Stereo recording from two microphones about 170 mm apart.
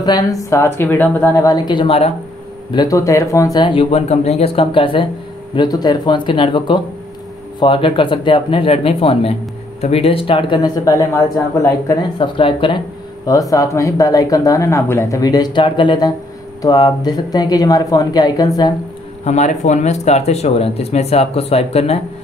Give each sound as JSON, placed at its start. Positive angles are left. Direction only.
{"t": 0.0, "sound": "speech", "side_deg": 20}
{"t": 2.7, "sound": "speech", "side_deg": 20}
{"t": 12.4, "sound": "speech", "side_deg": 30}
{"t": 19.2, "sound": "speech", "side_deg": 45}